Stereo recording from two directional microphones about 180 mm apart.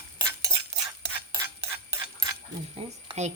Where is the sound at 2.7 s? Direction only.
35° right (ahead or behind).